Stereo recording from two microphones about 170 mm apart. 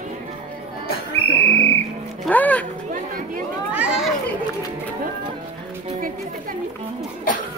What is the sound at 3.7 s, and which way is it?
Children playing, 5° right (ahead or behind).